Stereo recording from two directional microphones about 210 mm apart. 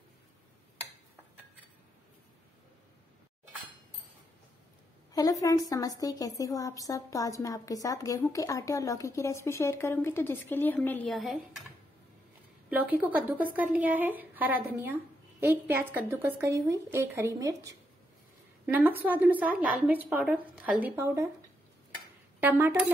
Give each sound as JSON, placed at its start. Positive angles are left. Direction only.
{"t": 5.1, "sound": "a woman's voice", "side_deg": 15}
{"t": 12.6, "sound": "a woman's voice", "side_deg": -5}
{"t": 22.4, "sound": "a woman's voice", "side_deg": -10}